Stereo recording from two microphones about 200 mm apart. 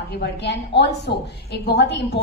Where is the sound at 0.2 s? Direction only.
55° left (ahead or behind).